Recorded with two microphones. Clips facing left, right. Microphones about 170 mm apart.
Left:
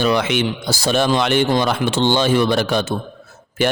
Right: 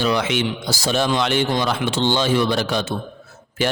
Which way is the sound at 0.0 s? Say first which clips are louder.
Left 3 dB; 55° left (ahead or behind).